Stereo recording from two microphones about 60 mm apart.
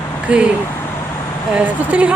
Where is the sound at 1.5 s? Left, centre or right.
Right.